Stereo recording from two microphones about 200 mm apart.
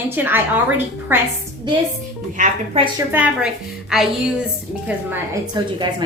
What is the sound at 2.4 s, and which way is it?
Speech, 30° right (ahead or behind).